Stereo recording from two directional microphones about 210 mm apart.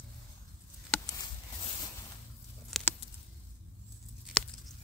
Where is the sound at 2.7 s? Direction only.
Centre (ahead or behind).